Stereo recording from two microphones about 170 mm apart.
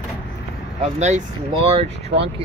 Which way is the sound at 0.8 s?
40° right (ahead or behind).